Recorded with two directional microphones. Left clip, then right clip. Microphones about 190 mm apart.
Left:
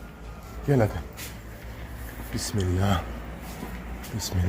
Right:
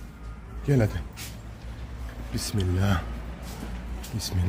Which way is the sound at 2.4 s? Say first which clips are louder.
Left 1 dB; 15° right (ahead or behind).